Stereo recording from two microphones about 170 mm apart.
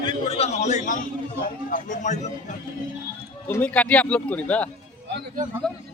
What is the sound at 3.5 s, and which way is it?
Speech, 10° left (ahead or behind).